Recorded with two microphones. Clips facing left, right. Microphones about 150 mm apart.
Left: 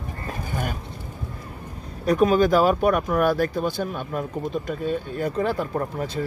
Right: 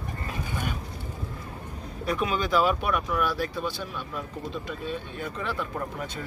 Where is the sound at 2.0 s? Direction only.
40° left (ahead or behind).